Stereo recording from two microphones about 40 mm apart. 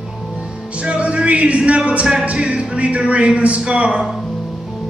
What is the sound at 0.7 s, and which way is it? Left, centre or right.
Music, right.